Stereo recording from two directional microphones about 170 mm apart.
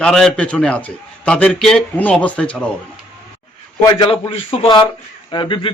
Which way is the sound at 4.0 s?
30° left (ahead or behind).